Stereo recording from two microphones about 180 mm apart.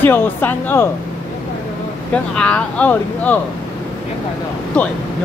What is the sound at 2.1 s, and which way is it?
Speech, 5° left (ahead or behind).